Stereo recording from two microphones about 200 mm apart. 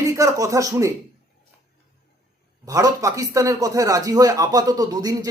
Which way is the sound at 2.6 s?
15° right (ahead or behind).